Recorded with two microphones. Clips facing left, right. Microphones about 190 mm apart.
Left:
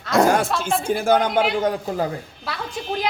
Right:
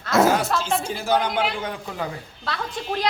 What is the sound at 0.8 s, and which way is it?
A man's voice, 55° left (ahead or behind).